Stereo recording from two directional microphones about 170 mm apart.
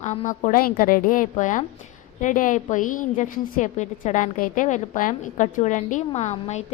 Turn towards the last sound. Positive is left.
turn(degrees=40)  # may be behind; listen again after turning